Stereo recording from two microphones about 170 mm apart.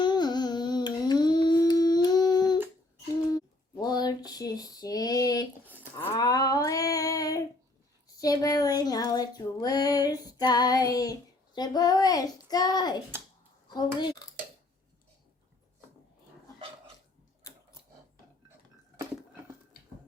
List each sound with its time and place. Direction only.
0.0 s carnatic music: 25° left (ahead or behind)
3.3 s female singing: 20° left (ahead or behind)
5.6 s a sound: 10° right (ahead or behind)
6.1 s female singing: 25° left (ahead or behind)
8.0 s a sound: 20° left (ahead or behind)
13.7 s a child's voice: 25° left (ahead or behind)